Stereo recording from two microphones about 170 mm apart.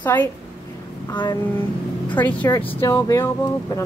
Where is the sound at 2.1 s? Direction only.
10° left (ahead or behind).